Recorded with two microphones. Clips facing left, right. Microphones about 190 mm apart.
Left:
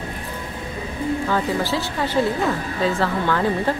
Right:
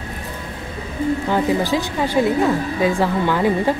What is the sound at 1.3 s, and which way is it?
A woman's voice, 15° right (ahead or behind).